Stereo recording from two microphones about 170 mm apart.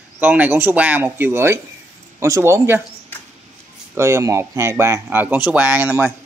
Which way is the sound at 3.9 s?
15° right (ahead or behind).